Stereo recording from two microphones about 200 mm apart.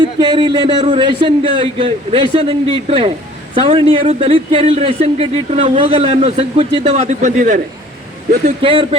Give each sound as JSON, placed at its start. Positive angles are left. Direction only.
{"t": 0.2, "sound": "speech", "side_deg": -20}
{"t": 8.6, "sound": "speech", "side_deg": -25}